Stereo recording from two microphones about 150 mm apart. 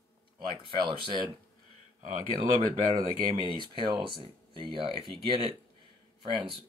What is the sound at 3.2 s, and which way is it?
Speech, 35° left (ahead or behind).